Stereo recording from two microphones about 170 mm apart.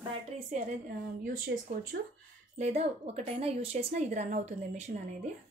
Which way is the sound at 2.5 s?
40° right (ahead or behind).